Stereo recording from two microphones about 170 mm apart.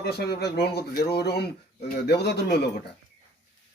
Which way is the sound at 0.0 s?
70° left (ahead or behind).